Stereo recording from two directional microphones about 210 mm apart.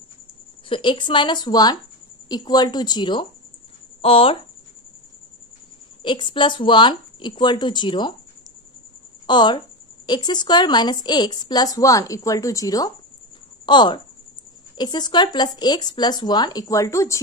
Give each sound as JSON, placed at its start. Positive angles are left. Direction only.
{"t": 0.7, "sound": "speech", "side_deg": 25}
{"t": 6.0, "sound": "speech", "side_deg": 25}
{"t": 9.2, "sound": "a woman's voice", "side_deg": 20}